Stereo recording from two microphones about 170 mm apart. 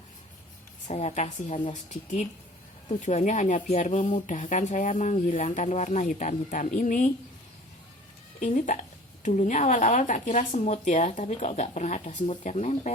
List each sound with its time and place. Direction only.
0.9 s a woman's voice: 40° left (ahead or behind)
8.4 s speech: 50° left (ahead or behind)